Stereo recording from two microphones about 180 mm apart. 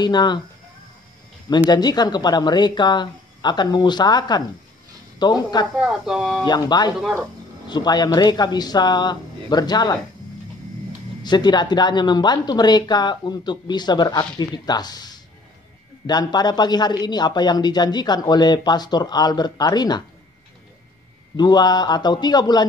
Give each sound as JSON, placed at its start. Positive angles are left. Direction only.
{"t": 0.0, "sound": "speech", "side_deg": 25}
{"t": 1.7, "sound": "speech", "side_deg": 25}
{"t": 5.8, "sound": "speech", "side_deg": -5}
{"t": 6.4, "sound": "speech", "side_deg": 25}
{"t": 11.2, "sound": "speech", "side_deg": 25}
{"t": 21.4, "sound": "speech", "side_deg": 25}